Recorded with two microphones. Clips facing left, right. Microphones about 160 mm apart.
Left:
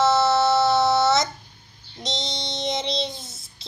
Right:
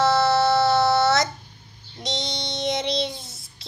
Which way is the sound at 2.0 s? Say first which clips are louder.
Right 1 dB; 20° left (ahead or behind).